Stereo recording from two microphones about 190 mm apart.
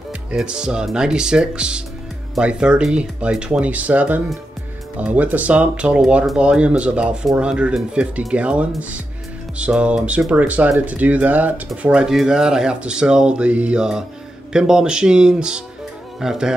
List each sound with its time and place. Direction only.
0.3 s speech: 5° right (ahead or behind)